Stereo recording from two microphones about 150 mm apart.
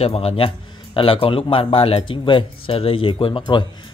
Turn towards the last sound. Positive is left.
turn(degrees=30)  # may be behind; listen again after turning